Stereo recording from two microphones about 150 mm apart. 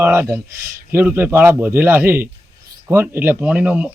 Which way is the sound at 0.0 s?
20° right (ahead or behind).